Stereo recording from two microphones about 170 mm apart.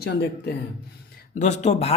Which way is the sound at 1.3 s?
45° left (ahead or behind).